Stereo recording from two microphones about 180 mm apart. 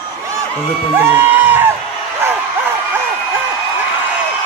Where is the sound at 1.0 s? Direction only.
10° right (ahead or behind).